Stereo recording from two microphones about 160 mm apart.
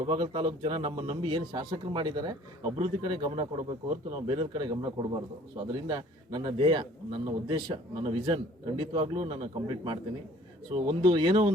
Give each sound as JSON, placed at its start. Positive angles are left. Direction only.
{"t": 0.1, "sound": "a man's voice", "side_deg": -30}